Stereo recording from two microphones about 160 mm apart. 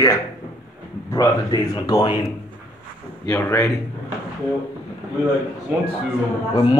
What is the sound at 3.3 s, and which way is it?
Speech, 20° left (ahead or behind).